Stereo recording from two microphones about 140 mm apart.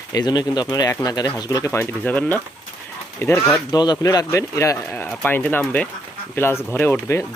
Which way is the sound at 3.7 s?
30° left (ahead or behind).